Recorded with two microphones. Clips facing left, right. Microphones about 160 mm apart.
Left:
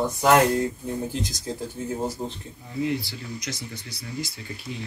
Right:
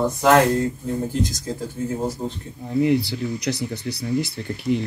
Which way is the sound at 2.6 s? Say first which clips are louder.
Right 8 dB; 70° right (ahead or behind).